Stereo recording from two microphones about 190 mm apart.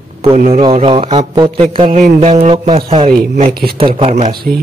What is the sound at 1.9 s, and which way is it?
Speech, 40° right (ahead or behind).